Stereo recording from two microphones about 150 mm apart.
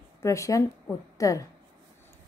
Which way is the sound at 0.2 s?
20° left (ahead or behind).